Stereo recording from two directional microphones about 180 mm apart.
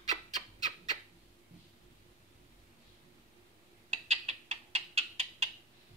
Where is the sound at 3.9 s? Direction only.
35° right (ahead or behind).